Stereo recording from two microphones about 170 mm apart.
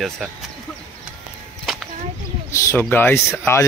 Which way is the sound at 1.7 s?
Centre (ahead or behind).